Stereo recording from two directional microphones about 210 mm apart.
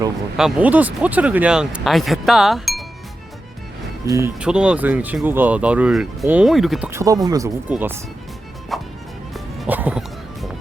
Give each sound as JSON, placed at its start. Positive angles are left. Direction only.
{"t": 0.3, "sound": "speech", "side_deg": -5}
{"t": 4.0, "sound": "speech", "side_deg": -15}
{"t": 8.7, "sound": "music", "side_deg": 0}